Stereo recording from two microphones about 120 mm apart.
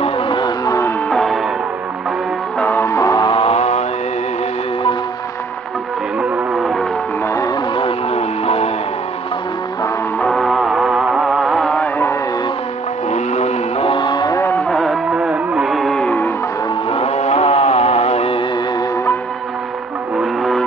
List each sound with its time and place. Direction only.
0.0 s music: 40° left (ahead or behind)
0.7 s music: 25° left (ahead or behind)
1.1 s music: centre (ahead or behind)
2.6 s music: 20° left (ahead or behind)
3.3 s vehicle: 45° left (ahead or behind)
3.5 s mantra: 65° left (ahead or behind)
6.5 s music: centre (ahead or behind)
7.7 s music: 55° left (ahead or behind)
10.2 s music: centre (ahead or behind)
13.1 s vehicle: 70° left (ahead or behind)
13.8 s a sound: 40° left (ahead or behind)
14.7 s music: centre (ahead or behind)
16.9 s vehicle: 60° left (ahead or behind)
20.2 s vehicle: centre (ahead or behind)